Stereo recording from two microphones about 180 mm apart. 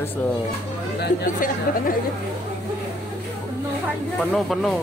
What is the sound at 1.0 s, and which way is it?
Speech, 50° left (ahead or behind).